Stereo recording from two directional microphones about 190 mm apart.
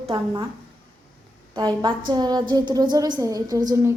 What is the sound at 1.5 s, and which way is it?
A woman's voice, 25° right (ahead or behind).